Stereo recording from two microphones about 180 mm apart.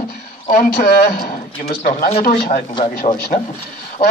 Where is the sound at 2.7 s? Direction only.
35° left (ahead or behind).